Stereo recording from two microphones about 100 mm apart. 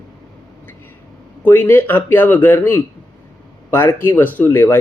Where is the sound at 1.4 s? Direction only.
20° left (ahead or behind).